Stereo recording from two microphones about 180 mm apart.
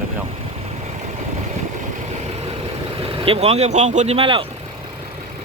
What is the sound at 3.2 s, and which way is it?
Speech, 35° right (ahead or behind).